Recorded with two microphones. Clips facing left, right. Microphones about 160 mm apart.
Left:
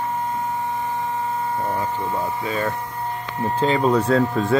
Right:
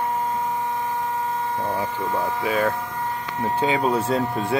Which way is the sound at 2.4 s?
10° right (ahead or behind).